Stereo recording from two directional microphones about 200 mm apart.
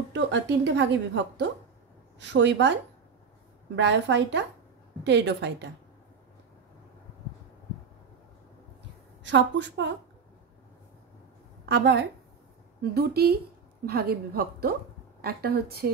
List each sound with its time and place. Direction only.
0.1 s a woman's voice: 60° right (ahead or behind)
9.2 s a woman's voice: 60° right (ahead or behind)
11.7 s a woman's voice: 55° right (ahead or behind)